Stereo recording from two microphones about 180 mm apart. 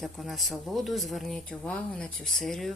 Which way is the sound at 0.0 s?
Centre (ahead or behind).